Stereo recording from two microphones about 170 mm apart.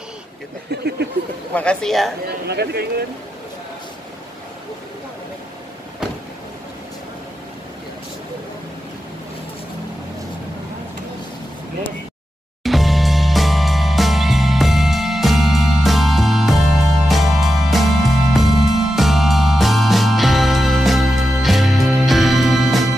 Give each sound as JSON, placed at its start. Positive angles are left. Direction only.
{"t": 1.5, "sound": "speech", "side_deg": 5}
{"t": 2.2, "sound": "speech", "side_deg": -70}
{"t": 12.6, "sound": "music", "side_deg": 0}